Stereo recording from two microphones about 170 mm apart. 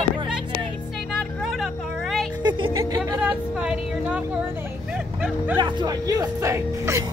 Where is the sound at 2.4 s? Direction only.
25° right (ahead or behind).